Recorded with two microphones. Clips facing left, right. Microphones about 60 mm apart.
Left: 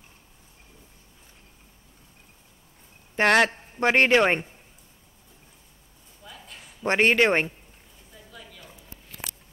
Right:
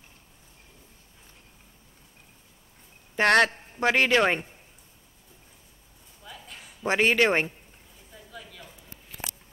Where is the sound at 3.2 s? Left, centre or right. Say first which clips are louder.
Left 1 dB; centre.